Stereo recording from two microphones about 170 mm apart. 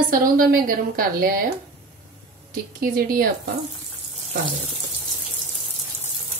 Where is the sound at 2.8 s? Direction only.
55° right (ahead or behind).